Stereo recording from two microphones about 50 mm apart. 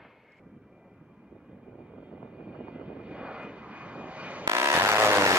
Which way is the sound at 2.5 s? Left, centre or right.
Right.